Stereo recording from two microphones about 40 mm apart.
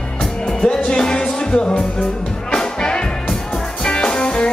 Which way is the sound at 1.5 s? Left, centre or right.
Left.